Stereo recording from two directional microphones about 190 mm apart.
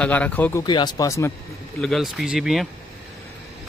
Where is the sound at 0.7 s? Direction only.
25° left (ahead or behind).